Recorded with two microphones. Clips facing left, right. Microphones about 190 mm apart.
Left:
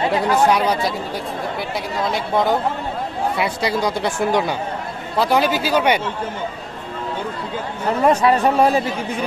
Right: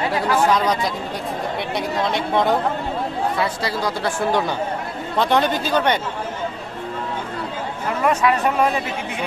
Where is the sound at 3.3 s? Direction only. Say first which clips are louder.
Left 2 dB; 15° left (ahead or behind).